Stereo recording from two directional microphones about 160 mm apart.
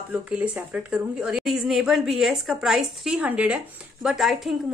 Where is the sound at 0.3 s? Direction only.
10° right (ahead or behind).